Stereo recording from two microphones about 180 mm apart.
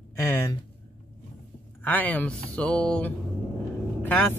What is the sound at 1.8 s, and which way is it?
Speech, 10° left (ahead or behind).